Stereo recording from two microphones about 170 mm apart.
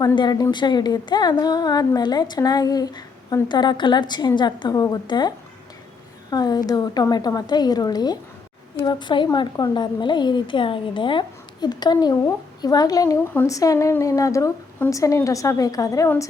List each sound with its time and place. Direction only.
0.0 s speech: 25° left (ahead or behind)
6.3 s speech: 25° left (ahead or behind)